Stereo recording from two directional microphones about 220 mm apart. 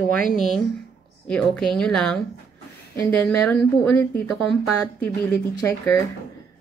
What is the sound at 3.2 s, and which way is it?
A woman's voice, 5° left (ahead or behind).